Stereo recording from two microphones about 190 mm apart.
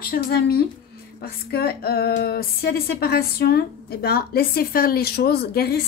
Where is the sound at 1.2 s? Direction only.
55° left (ahead or behind).